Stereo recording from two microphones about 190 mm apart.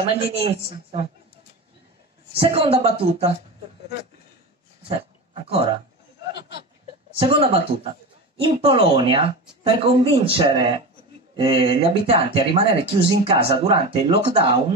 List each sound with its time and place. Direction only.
0.0 s a woman's voice: 30° right (ahead or behind)
2.4 s a woman's voice: 30° right (ahead or behind)
4.8 s dog: 30° right (ahead or behind)
7.2 s speech: 30° right (ahead or behind)